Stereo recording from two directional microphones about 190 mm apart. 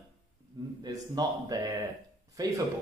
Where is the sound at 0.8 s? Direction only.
20° right (ahead or behind).